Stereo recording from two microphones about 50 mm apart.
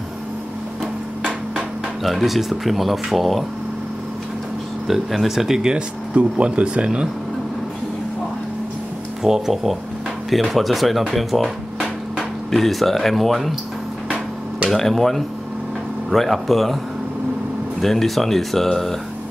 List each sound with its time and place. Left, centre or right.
2.0 s speech: centre
4.8 s speech: centre
9.2 s speech: centre
14.7 s speech: centre
17.7 s speech: centre